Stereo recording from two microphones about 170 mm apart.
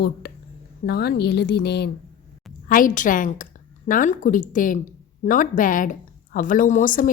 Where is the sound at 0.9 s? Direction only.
70° left (ahead or behind).